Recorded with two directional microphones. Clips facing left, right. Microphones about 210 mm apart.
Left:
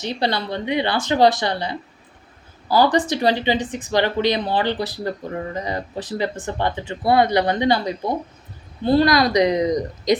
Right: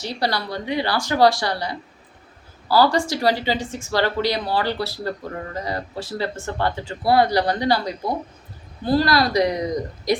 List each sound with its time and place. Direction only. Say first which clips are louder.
0.0 s speech: left 2 dB; 20° left (ahead or behind)